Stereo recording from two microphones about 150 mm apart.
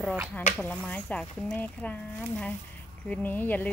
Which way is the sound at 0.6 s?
10° left (ahead or behind).